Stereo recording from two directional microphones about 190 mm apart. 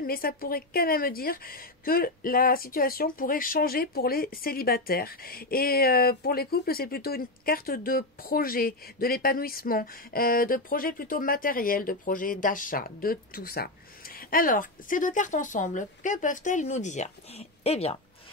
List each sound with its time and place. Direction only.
0.0 s a woman's voice: 50° left (ahead or behind); by 17.9 s 35° left (ahead or behind)